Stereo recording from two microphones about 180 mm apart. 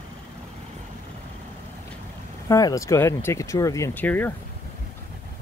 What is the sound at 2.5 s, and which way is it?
Speech, 20° left (ahead or behind).